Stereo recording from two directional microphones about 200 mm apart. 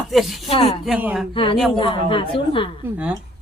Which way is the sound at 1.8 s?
25° left (ahead or behind).